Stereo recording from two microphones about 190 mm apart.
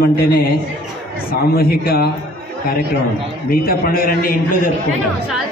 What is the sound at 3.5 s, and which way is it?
A man's voice, 50° left (ahead or behind).